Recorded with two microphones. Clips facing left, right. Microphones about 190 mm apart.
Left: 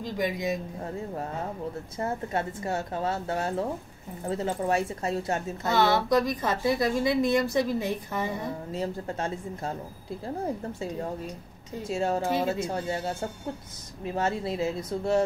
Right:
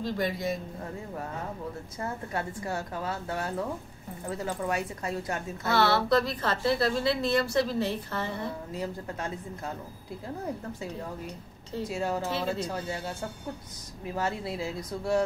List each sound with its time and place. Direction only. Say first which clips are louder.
0.0 s a woman's voice: left 1 dB; 15° left (ahead or behind)
2.0 s a woman's voice: left 4 dB; 25° left (ahead or behind)
8.7 s a woman's voice: left 3 dB; 25° left (ahead or behind)
11.9 s a woman's voice: left 5 dB; 25° left (ahead or behind)
14.1 s a woman's voice: left 3 dB; 25° left (ahead or behind)